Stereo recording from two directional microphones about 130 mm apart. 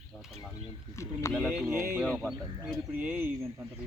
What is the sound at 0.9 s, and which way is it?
Speech, 20° left (ahead or behind).